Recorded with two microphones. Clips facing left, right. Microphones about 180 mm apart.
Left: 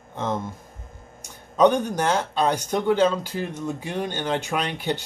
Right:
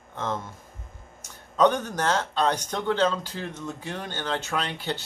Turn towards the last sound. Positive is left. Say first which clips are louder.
# left 4 dB
turn(degrees=15)  # may be behind; listen again after turning